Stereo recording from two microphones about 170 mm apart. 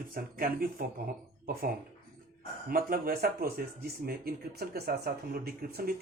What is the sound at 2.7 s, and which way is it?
Speech, 55° right (ahead or behind).